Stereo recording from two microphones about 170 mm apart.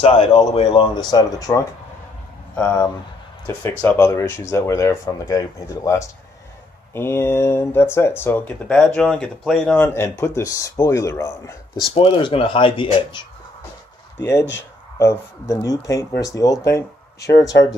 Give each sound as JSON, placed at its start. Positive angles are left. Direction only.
{"t": 0.0, "sound": "speech", "side_deg": 35}
{"t": 1.1, "sound": "speech", "side_deg": 20}
{"t": 3.4, "sound": "speech", "side_deg": 15}
{"t": 11.9, "sound": "speech", "side_deg": 30}
{"t": 14.1, "sound": "speech", "side_deg": 15}